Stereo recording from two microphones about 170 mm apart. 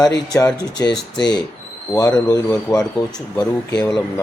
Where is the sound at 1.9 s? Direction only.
20° left (ahead or behind).